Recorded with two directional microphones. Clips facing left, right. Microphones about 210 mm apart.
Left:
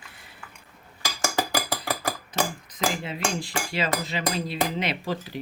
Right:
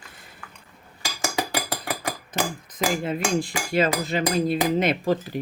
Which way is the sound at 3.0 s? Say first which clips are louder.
Right 5 dB; 50° right (ahead or behind).